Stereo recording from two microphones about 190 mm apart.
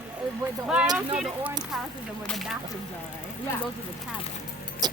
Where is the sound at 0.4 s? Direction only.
15° right (ahead or behind).